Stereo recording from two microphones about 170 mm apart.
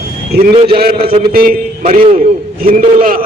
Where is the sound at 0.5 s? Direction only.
30° right (ahead or behind).